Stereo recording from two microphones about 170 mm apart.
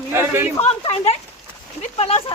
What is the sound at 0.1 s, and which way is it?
Speech, 15° right (ahead or behind).